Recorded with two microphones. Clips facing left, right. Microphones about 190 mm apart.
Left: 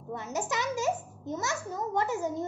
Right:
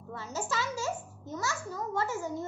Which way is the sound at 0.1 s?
20° left (ahead or behind).